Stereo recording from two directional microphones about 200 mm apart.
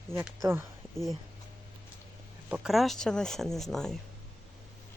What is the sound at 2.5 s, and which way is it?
Speech, centre (ahead or behind).